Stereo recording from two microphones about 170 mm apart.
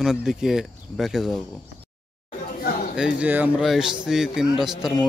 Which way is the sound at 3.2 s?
10° right (ahead or behind).